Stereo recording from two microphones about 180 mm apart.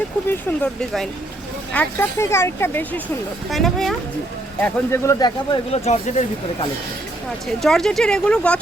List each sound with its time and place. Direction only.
0.3 s speech: 5° left (ahead or behind)
3.5 s speech: centre (ahead or behind)
4.6 s speech: 15° left (ahead or behind)
5.7 s speech: 35° left (ahead or behind)
7.4 s speech: centre (ahead or behind)